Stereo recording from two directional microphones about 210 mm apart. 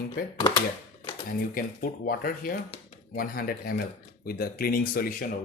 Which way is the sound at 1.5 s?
45° left (ahead or behind).